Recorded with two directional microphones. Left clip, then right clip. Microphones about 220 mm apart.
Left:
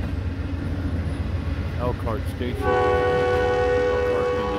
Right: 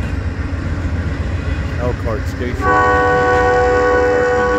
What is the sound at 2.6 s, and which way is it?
Train, 15° left (ahead or behind).